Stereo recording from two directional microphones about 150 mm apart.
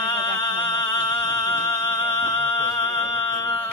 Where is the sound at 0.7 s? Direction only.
25° left (ahead or behind).